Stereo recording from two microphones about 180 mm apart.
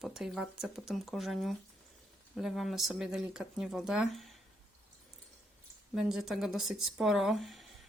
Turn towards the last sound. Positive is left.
turn(degrees=0)  # may be behind; listen again after turning